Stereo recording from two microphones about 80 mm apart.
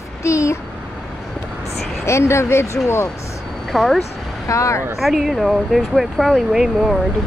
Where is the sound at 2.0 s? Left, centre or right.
Left.